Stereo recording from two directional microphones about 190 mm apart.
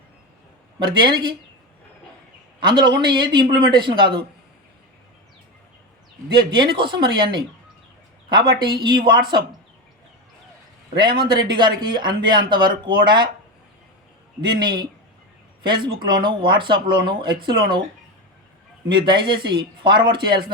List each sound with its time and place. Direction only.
0.8 s speech: 25° right (ahead or behind)
2.6 s speech: 25° right (ahead or behind)
6.3 s speech: 25° right (ahead or behind)
10.9 s speech: 25° right (ahead or behind)
14.4 s speech: 25° right (ahead or behind)
18.9 s speech: 25° right (ahead or behind)